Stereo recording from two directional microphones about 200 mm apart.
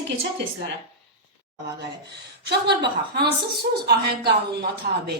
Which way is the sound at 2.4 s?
55° right (ahead or behind).